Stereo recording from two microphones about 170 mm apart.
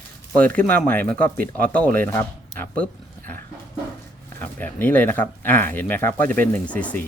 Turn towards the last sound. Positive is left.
turn(degrees=10)  # may be behind; listen again after turning